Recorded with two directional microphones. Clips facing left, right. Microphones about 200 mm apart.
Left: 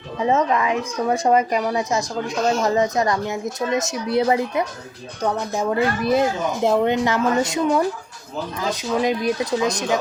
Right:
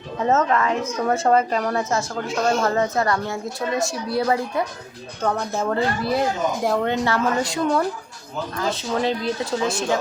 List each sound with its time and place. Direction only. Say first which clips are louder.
0.2 s a woman's voice: even; 10° left (ahead or behind)